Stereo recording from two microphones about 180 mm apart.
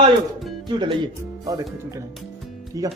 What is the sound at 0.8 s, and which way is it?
Speech, 25° right (ahead or behind).